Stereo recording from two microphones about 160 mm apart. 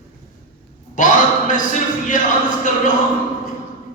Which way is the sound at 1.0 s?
55° left (ahead or behind).